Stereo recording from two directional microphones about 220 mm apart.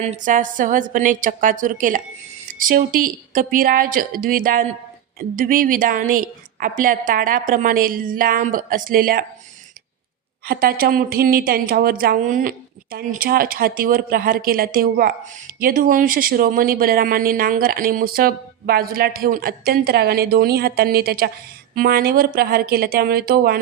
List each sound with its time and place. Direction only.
0.0 s a woman's voice: 30° right (ahead or behind)
10.4 s a woman's voice: 45° right (ahead or behind)